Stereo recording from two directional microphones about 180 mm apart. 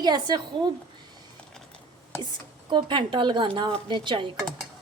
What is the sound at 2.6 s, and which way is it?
A woman's voice, 25° right (ahead or behind).